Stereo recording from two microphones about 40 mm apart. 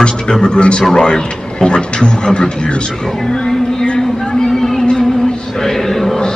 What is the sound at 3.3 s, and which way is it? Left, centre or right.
Music, centre.